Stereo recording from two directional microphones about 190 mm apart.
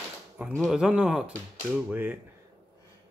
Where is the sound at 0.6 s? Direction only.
5° right (ahead or behind).